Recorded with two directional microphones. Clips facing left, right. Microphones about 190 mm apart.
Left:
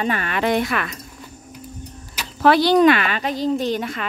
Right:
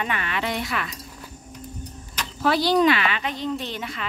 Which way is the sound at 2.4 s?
65° left (ahead or behind).